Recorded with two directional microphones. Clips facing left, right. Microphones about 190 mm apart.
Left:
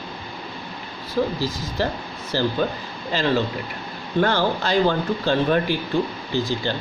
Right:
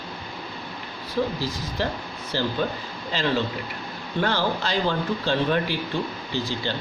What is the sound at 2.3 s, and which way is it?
Speech, 45° left (ahead or behind).